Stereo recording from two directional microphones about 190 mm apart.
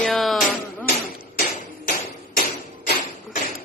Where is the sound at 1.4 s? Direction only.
50° left (ahead or behind).